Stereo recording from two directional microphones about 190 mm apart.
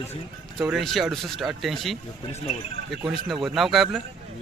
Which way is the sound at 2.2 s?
30° left (ahead or behind).